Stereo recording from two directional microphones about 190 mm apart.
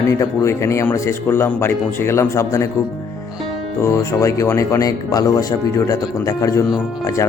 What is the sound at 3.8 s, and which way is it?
Speech, 15° left (ahead or behind).